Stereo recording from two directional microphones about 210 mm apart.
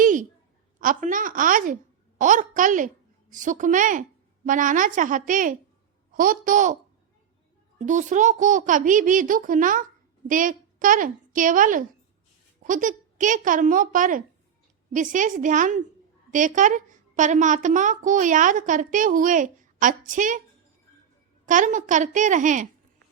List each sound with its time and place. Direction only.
0.0 s a sound: 40° right (ahead or behind)
0.8 s a woman's voice: 40° right (ahead or behind)
7.8 s a woman's voice: 35° right (ahead or behind)
21.4 s a woman's voice: 40° right (ahead or behind)